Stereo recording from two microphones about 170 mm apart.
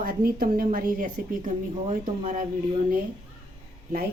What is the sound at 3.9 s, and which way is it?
Speech, 65° right (ahead or behind).